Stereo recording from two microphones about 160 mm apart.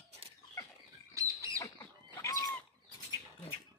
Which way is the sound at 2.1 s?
20° left (ahead or behind).